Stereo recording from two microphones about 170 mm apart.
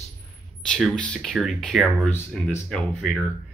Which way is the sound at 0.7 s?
5° left (ahead or behind).